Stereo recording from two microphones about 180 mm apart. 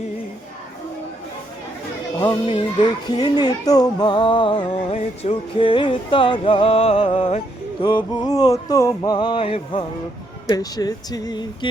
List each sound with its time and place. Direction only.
2.2 s speech: 25° left (ahead or behind)
7.9 s speech: 25° left (ahead or behind)